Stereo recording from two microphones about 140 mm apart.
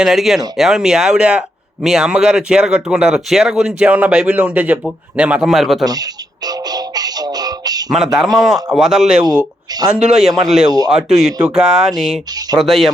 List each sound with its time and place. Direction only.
0.0 s speech: 5° right (ahead or behind)
6.7 s music: 30° right (ahead or behind)
7.9 s speech: 5° right (ahead or behind)
10.7 s speech: 30° right (ahead or behind)
11.4 s speech: 5° right (ahead or behind)